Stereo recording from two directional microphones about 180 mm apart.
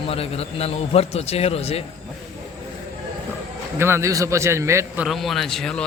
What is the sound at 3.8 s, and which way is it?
A man's voice, 15° right (ahead or behind).